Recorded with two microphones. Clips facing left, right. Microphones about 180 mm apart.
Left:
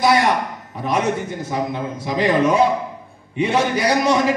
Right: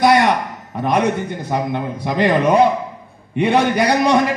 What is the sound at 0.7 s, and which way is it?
A man's voice, 60° right (ahead or behind).